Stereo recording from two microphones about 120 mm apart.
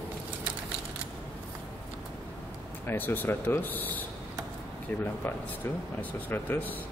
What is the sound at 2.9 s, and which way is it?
Speech, 15° left (ahead or behind).